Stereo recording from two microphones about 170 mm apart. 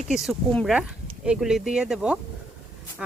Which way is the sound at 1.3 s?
5° right (ahead or behind).